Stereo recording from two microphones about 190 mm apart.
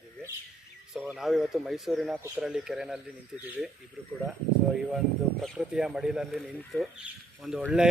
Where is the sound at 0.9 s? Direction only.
Centre (ahead or behind).